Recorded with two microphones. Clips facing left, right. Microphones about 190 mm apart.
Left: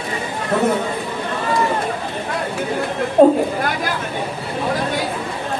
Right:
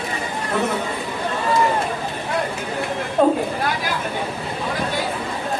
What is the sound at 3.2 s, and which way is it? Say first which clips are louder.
Speech: left 6 dB; 35° left (ahead or behind).